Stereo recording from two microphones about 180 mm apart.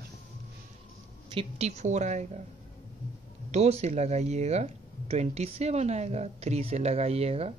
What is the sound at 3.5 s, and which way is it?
Speech, 40° right (ahead or behind).